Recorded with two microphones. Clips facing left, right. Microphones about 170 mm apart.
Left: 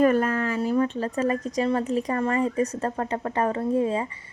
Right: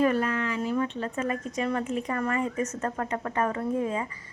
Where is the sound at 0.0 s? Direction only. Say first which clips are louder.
Left 4 dB; 45° left (ahead or behind).